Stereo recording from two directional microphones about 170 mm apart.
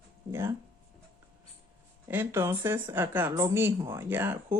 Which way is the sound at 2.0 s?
15° right (ahead or behind).